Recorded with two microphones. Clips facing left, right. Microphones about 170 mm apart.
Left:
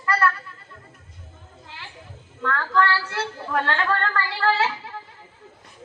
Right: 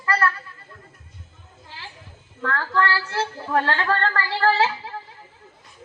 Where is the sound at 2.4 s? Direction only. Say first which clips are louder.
Left 1 dB; 30° right (ahead or behind).